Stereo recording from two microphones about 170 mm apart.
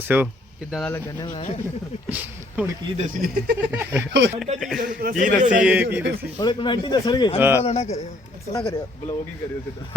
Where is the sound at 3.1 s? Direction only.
65° right (ahead or behind).